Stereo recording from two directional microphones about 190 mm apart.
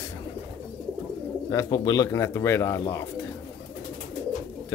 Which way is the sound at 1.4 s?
20° left (ahead or behind).